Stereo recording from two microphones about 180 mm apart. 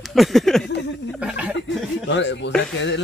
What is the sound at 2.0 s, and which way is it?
Speech, 80° left.